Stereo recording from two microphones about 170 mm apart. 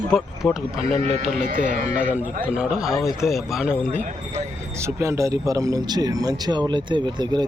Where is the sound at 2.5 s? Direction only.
5° right (ahead or behind).